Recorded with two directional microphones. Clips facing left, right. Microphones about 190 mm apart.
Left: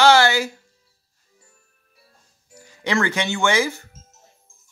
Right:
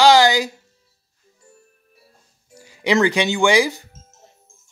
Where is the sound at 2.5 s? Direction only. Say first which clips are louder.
Right 5 dB; 10° right (ahead or behind).